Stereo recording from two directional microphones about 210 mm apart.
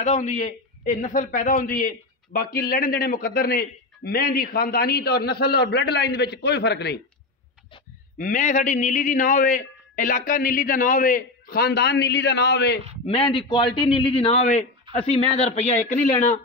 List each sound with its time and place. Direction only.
0.0 s a man's voice: 35° left (ahead or behind); by 7.0 s 50° left (ahead or behind)
8.2 s a man's voice: 40° left (ahead or behind)
13.0 s a man's voice: 25° left (ahead or behind)